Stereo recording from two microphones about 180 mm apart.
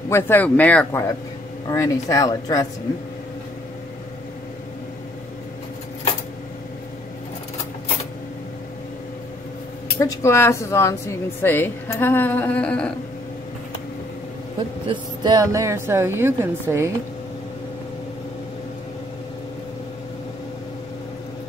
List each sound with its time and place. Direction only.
0.1 s a woman's voice: 10° left (ahead or behind)
9.9 s a woman's voice: 15° left (ahead or behind)
14.9 s speech: 20° right (ahead or behind)